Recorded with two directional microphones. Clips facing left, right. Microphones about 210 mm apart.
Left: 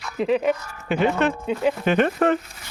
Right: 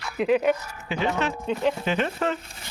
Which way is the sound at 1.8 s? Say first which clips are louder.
Left 6 dB; 55° left (ahead or behind).